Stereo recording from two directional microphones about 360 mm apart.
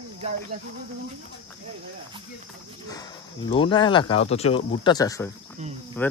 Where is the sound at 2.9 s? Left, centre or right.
Centre.